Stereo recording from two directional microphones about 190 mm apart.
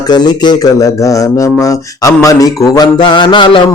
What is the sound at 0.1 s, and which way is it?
Speech, 20° left (ahead or behind).